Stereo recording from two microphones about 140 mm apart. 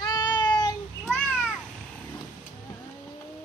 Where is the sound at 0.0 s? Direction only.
30° left (ahead or behind).